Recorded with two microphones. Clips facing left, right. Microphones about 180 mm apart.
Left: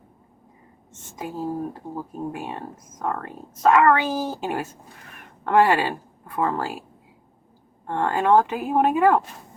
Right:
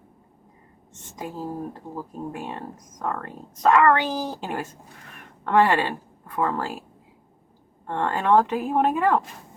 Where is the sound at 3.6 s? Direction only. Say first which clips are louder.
Left 1 dB; 5° left (ahead or behind).